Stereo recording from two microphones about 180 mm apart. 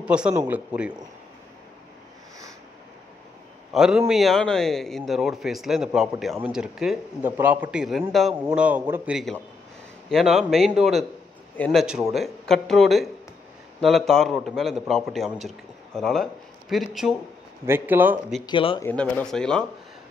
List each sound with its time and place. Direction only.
0.0 s a man's voice: 5° right (ahead or behind)
3.7 s a man's voice: centre (ahead or behind)
11.8 s a man's voice: centre (ahead or behind)
17.6 s a man's voice: 10° right (ahead or behind)
18.4 s speech: 30° left (ahead or behind)
18.8 s a man's voice: 10° left (ahead or behind)